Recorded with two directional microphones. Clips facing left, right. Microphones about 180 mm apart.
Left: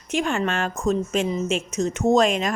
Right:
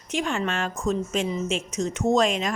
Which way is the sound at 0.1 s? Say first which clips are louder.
Left 3 dB; 50° left (ahead or behind).